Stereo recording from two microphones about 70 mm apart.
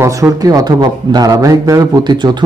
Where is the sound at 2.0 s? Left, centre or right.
Right.